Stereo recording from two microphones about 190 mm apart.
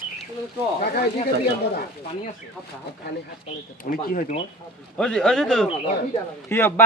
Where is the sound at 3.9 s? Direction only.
50° left (ahead or behind).